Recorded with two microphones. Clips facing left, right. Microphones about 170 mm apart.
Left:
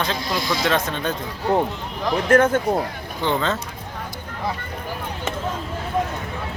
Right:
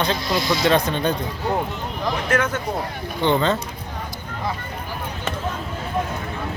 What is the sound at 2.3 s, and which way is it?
Speech, 55° left (ahead or behind).